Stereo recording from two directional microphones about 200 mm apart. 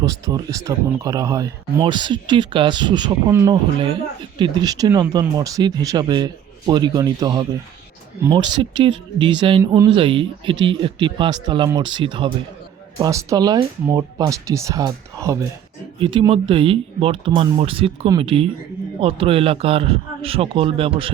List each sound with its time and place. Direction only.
0.0 s speech: 15° right (ahead or behind)